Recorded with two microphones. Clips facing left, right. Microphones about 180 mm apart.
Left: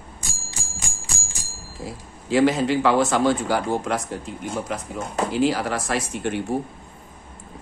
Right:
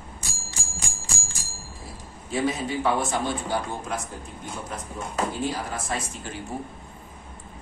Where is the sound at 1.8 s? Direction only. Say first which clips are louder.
Left 11 dB; 90° left; by 6.4 s 65° left (ahead or behind).